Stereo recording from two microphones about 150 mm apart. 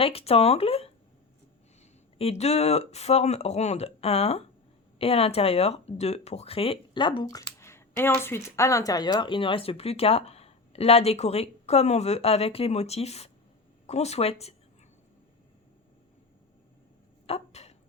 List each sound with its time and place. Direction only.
0.0 s speech: 40° left (ahead or behind)
2.1 s speech: 45° left (ahead or behind)
17.2 s a sound: 45° left (ahead or behind)